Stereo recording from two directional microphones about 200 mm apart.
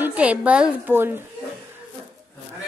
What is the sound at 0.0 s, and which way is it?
A woman's voice, 5° right (ahead or behind).